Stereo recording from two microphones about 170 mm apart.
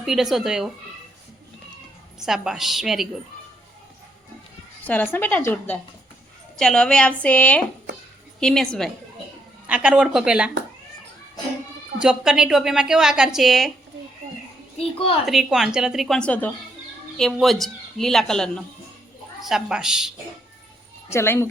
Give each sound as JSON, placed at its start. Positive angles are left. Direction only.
{"t": 0.0, "sound": "a woman's voice", "side_deg": -5}
{"t": 2.2, "sound": "a woman's voice", "side_deg": -5}
{"t": 4.8, "sound": "a woman's voice", "side_deg": 10}
{"t": 9.6, "sound": "a woman's voice", "side_deg": -5}
{"t": 11.9, "sound": "a woman's voice", "side_deg": -5}
{"t": 14.8, "sound": "a woman's voice", "side_deg": 35}
{"t": 15.3, "sound": "a woman's voice", "side_deg": 0}
{"t": 21.1, "sound": "a woman's voice", "side_deg": 15}